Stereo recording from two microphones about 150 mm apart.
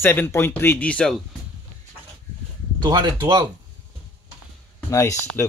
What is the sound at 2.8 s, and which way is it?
Speech, 30° right (ahead or behind).